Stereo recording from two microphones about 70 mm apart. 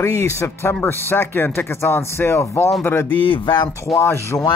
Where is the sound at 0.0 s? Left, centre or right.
Left.